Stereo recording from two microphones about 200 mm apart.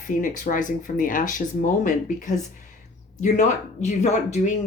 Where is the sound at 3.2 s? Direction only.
35° left (ahead or behind).